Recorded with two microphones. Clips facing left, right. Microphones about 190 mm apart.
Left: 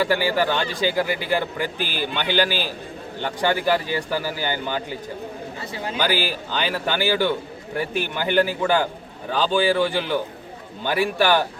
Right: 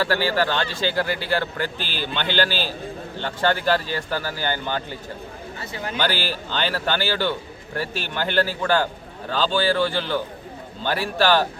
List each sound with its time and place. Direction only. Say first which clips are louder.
0.0 s speech: left 1 dB; 15° left (ahead or behind)
5.7 s a man's voice: even; 25° left (ahead or behind)
6.0 s speech: left 2 dB; 15° left (ahead or behind)